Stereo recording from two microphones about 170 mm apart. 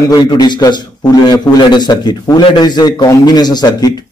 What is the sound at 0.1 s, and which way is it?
A man's voice, 25° left (ahead or behind).